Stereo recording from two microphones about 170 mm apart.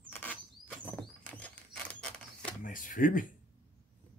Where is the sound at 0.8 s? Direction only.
10° left (ahead or behind).